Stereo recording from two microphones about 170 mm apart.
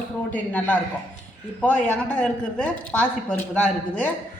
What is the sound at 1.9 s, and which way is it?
A woman's voice, 5° left (ahead or behind).